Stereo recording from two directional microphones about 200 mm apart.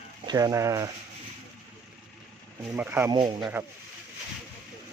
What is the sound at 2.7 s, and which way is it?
Speech, 10° right (ahead or behind).